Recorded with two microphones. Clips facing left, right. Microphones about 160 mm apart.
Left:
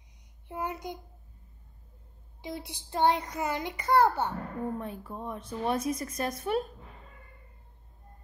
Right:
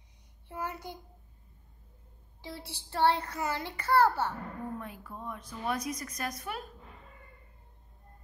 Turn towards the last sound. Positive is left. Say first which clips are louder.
# left 8 dB
turn(degrees=30)  # may be behind; listen again after turning